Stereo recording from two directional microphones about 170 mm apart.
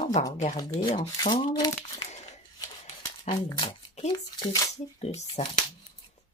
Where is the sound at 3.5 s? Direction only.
30° left (ahead or behind).